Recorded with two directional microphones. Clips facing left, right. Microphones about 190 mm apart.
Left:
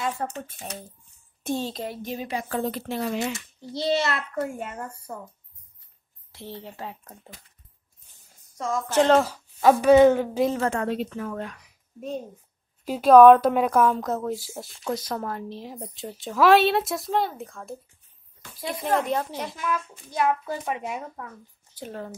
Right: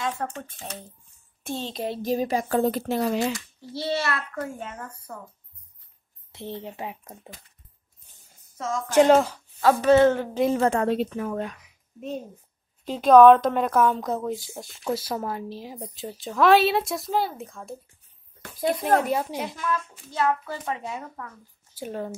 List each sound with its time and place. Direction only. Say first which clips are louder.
0.0 s a child's voice: even; 10° left (ahead or behind)
2.0 s a woman's voice: right 6 dB; 35° right (ahead or behind)
3.3 s a child's voice: left 2 dB; 20° left (ahead or behind)
4.6 s a child's voice: left 3 dB; 10° left (ahead or behind)
6.3 s speech: right 4 dB; 20° right (ahead or behind)
8.5 s speech: right 3 dB; centre (ahead or behind)
9.2 s a child's voice: left 2 dB; 10° left (ahead or behind)
10.6 s a woman's voice: right 4 dB; 25° right (ahead or behind)
11.1 s speech: right 3 dB; 15° right (ahead or behind)
12.8 s a woman's voice: left 1 dB; 10° left (ahead or behind)
18.4 s a sound: right 7 dB; 45° right (ahead or behind)
19.0 s speech: right 1 dB; 10° right (ahead or behind)
19.6 s a child's voice: even; 10° left (ahead or behind)
21.7 s speech: right 3 dB; 10° right (ahead or behind)